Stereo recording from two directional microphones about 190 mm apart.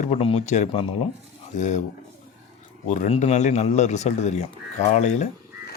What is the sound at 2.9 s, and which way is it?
Speech, 40° left (ahead or behind).